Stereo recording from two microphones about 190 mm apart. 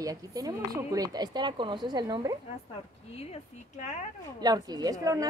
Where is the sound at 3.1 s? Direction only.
35° left (ahead or behind).